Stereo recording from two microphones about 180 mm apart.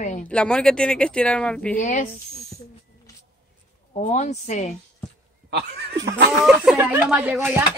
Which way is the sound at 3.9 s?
40° left (ahead or behind).